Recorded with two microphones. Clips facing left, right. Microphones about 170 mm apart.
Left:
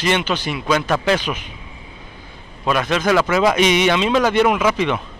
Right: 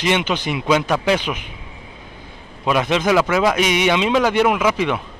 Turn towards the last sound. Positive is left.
turn(degrees=-10)  # may be behind; listen again after turning